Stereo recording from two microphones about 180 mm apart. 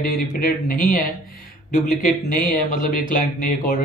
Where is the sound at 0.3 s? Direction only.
50° left (ahead or behind).